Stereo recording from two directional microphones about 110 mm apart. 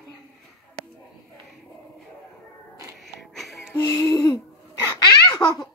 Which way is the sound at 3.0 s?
Centre (ahead or behind).